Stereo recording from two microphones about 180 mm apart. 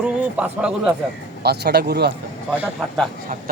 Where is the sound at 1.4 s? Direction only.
65° right (ahead or behind).